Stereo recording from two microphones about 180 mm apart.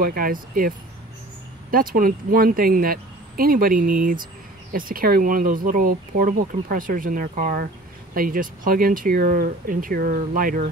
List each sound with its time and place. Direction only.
0.0 s speech: 55° right (ahead or behind)